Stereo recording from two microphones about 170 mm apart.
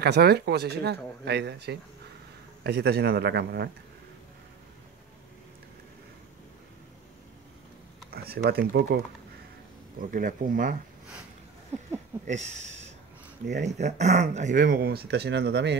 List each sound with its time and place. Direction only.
0.0 s speech: 70° right (ahead or behind)
8.1 s speech: 65° right (ahead or behind)
9.9 s speech: 55° right (ahead or behind)
12.3 s speech: 40° right (ahead or behind); by 15.8 s 85° right